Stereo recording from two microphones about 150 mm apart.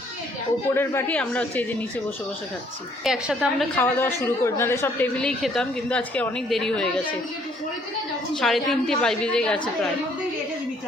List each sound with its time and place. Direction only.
0.7 s a woman's voice: 15° left (ahead or behind)
3.0 s a woman's voice: 5° right (ahead or behind)
3.8 s a woman's voice: 15° left (ahead or behind)
5.2 s a woman's voice: 5° left (ahead or behind)
8.3 s a woman's voice: centre (ahead or behind)